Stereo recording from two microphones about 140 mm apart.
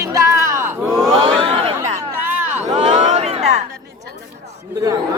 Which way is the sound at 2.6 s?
55° right (ahead or behind).